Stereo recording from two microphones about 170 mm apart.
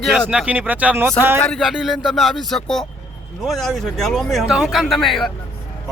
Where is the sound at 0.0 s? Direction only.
Centre (ahead or behind).